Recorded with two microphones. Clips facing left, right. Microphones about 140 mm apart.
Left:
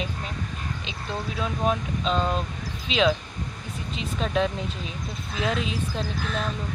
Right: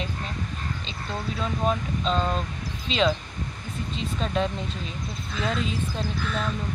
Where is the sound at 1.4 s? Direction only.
5° left (ahead or behind).